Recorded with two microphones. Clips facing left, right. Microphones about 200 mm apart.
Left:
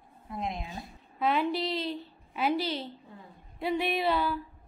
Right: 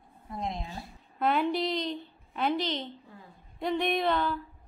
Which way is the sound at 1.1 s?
Centre (ahead or behind).